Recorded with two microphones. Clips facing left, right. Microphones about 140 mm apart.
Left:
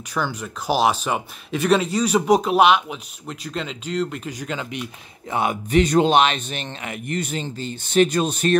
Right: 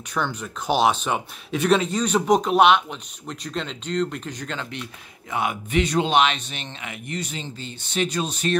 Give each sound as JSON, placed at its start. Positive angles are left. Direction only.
{"t": 0.1, "sound": "speech", "side_deg": 0}
{"t": 5.3, "sound": "speech", "side_deg": 35}